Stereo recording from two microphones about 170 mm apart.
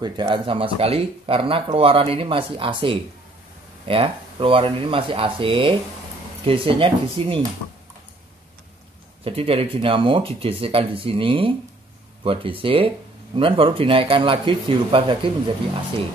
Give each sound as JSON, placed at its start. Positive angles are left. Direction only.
{"t": 0.0, "sound": "speech", "side_deg": -30}
{"t": 9.2, "sound": "speech", "side_deg": -35}